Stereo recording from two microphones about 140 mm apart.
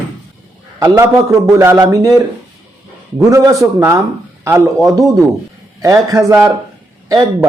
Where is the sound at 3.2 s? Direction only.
25° right (ahead or behind).